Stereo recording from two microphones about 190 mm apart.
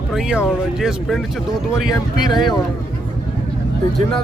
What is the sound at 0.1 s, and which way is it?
Speech, 5° right (ahead or behind).